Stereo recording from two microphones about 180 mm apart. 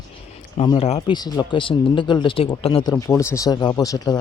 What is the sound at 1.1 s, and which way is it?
Speech, 20° left (ahead or behind).